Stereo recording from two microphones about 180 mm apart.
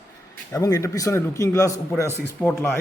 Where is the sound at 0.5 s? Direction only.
15° left (ahead or behind).